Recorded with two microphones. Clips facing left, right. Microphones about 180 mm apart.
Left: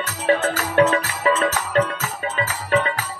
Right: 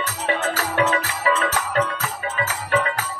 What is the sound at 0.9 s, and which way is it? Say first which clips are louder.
Music: left 2 dB; 35° left (ahead or behind).